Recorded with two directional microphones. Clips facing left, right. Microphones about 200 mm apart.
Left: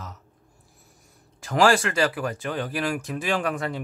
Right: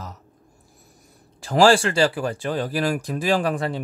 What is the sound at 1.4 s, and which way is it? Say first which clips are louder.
Speech: right 4 dB; 30° right (ahead or behind).